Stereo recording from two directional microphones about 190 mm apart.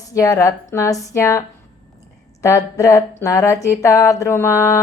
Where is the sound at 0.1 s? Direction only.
15° left (ahead or behind).